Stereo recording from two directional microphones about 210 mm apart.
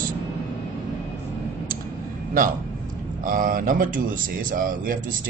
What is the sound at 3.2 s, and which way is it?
A man's voice, 40° right (ahead or behind).